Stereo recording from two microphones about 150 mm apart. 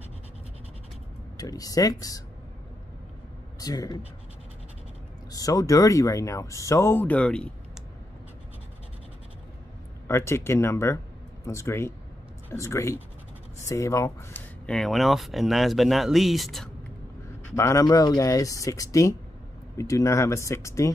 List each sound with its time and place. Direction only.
1.3 s speech: 25° left (ahead or behind)
3.5 s speech: 25° left (ahead or behind)
5.3 s speech: 25° left (ahead or behind); by 7.5 s 5° left (ahead or behind)
10.0 s speech: 15° left (ahead or behind)
14.7 s speech: centre (ahead or behind)
17.6 s speech: 20° left (ahead or behind)